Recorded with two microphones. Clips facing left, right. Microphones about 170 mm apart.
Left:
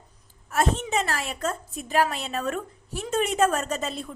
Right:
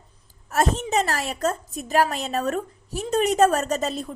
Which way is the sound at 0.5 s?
40° right (ahead or behind).